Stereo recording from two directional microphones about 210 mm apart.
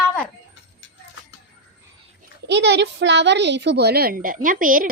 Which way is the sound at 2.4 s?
55° right (ahead or behind).